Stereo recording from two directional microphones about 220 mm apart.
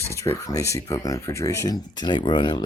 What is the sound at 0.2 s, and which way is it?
Speech, 15° left (ahead or behind).